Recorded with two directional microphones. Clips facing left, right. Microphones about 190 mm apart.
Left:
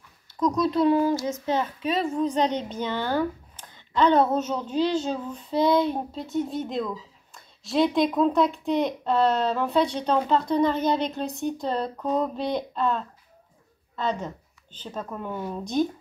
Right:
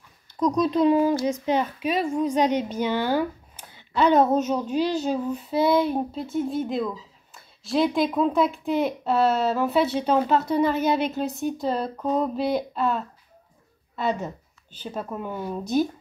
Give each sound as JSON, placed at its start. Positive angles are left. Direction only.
{"t": 0.3, "sound": "a woman's voice", "side_deg": -15}